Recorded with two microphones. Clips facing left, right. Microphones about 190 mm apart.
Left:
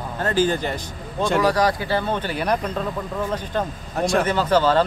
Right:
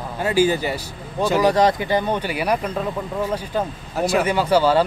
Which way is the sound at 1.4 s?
20° right (ahead or behind).